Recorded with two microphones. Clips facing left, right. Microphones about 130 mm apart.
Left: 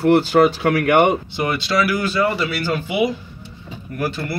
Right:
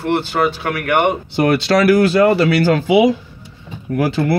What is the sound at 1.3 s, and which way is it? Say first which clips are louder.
Speech: right 6 dB; 85° right.